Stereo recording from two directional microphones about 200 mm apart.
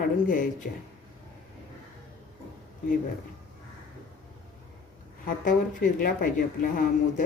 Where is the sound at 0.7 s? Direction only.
45° left (ahead or behind).